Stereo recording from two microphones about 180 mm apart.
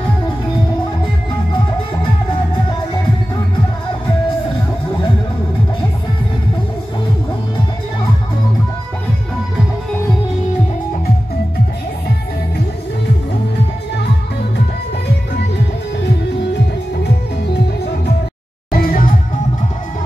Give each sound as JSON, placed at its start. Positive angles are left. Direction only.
{"t": 18.7, "sound": "music", "side_deg": 55}